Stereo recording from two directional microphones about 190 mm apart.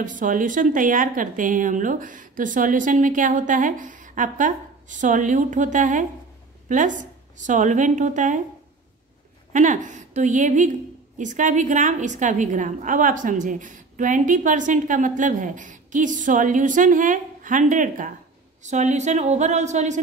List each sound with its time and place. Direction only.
0.0 s a woman's voice: 45° right (ahead or behind)
9.5 s a woman's voice: 40° right (ahead or behind)